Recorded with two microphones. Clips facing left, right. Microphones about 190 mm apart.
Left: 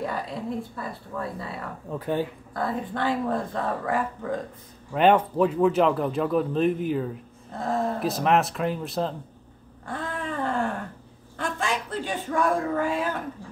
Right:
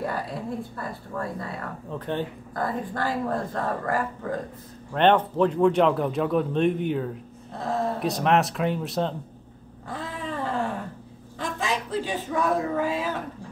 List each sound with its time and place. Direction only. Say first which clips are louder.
0.0 s speech: even; centre (ahead or behind)
9.8 s a sound: left 1 dB; centre (ahead or behind)
11.3 s a man's voice: even; centre (ahead or behind)